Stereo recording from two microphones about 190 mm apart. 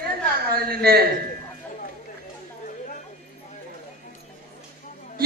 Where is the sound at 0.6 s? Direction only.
55° right (ahead or behind).